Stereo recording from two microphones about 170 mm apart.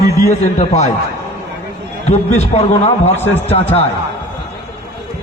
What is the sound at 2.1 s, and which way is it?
A man's voice, 40° left (ahead or behind).